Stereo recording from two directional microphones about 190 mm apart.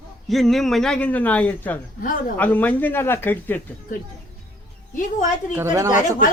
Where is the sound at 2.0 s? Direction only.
45° left (ahead or behind).